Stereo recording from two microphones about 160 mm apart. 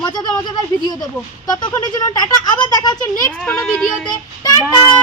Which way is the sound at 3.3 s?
5° left (ahead or behind).